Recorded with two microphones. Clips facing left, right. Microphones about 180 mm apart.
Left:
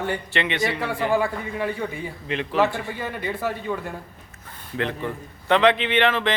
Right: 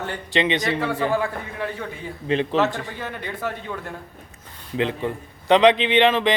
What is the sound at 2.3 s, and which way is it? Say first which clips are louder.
Speech: right 7 dB; 30° right (ahead or behind).